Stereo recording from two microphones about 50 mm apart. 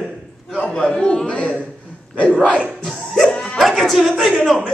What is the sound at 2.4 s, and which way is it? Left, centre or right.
Speech, centre.